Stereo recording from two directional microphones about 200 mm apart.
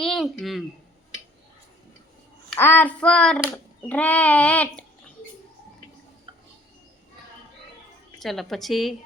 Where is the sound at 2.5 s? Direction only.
10° left (ahead or behind).